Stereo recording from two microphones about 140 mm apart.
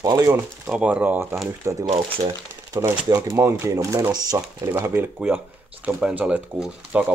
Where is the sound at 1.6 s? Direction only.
25° right (ahead or behind).